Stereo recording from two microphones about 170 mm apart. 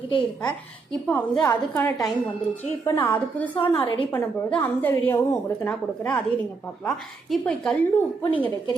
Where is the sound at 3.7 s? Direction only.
30° left (ahead or behind).